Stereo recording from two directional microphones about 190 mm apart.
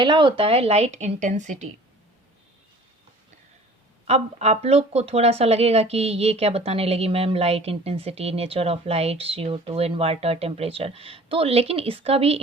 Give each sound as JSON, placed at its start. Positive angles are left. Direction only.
{"t": 0.0, "sound": "speech", "side_deg": -25}
{"t": 4.0, "sound": "speech", "side_deg": -35}